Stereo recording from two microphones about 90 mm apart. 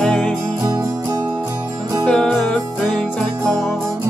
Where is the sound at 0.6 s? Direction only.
35° right (ahead or behind).